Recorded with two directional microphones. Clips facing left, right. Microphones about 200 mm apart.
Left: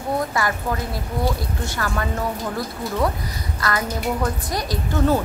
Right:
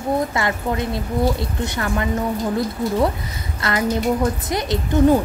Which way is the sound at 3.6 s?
25° right (ahead or behind).